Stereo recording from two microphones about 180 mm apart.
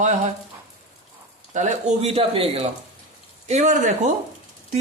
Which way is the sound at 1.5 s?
40° right (ahead or behind).